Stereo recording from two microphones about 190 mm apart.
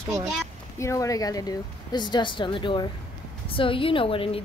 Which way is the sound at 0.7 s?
15° left (ahead or behind).